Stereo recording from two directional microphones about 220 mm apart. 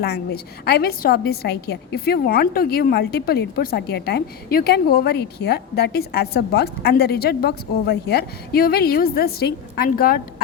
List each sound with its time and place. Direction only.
0.6 s a woman's voice: 45° left (ahead or behind)